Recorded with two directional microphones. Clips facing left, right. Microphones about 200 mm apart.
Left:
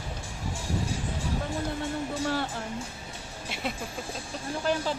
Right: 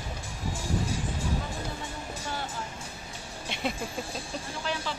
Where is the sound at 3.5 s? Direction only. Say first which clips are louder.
Right 2 dB; 5° left (ahead or behind).